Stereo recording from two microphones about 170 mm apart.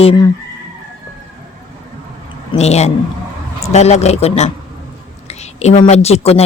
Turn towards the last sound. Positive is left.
turn(degrees=35)  # may be behind; listen again after turning